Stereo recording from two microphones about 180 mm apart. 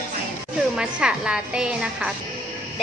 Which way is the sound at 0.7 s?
5° right (ahead or behind).